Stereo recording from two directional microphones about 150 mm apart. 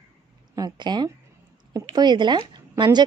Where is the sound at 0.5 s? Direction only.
25° right (ahead or behind).